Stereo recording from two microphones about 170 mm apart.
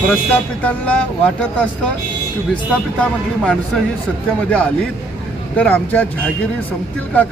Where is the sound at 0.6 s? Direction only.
10° left (ahead or behind).